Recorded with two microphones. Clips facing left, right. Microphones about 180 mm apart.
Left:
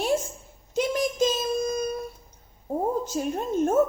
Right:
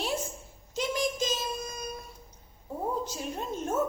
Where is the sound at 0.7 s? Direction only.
55° left (ahead or behind).